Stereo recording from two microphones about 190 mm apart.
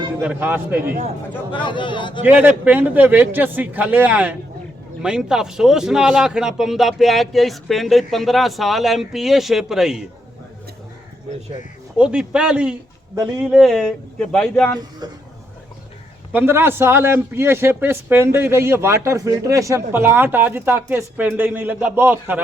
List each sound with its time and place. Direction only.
0.2 s a man's voice: 10° right (ahead or behind)
1.5 s speech: 25° left (ahead or behind)
2.2 s a man's voice: 10° right (ahead or behind)
11.9 s speech: 5° right (ahead or behind)
14.8 s speech: 20° right (ahead or behind)
16.3 s a man's voice: 10° right (ahead or behind)